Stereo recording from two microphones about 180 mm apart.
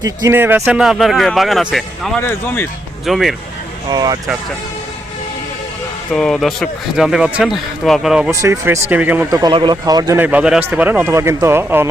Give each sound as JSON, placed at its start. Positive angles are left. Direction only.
{"t": 0.0, "sound": "speech", "side_deg": -15}
{"t": 2.2, "sound": "speech", "side_deg": 10}
{"t": 3.1, "sound": "speech", "side_deg": 0}
{"t": 3.9, "sound": "a man's voice", "side_deg": -20}
{"t": 6.1, "sound": "speech", "side_deg": 0}
{"t": 8.3, "sound": "speech", "side_deg": -15}
{"t": 9.4, "sound": "a man's voice", "side_deg": -25}
{"t": 10.2, "sound": "speech", "side_deg": -10}